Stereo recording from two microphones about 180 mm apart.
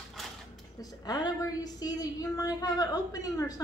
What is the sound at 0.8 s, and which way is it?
A woman's voice, 20° left (ahead or behind).